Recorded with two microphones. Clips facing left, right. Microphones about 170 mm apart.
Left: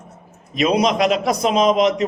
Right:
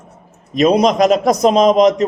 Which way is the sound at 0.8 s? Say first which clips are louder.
Right 5 dB; 40° right (ahead or behind).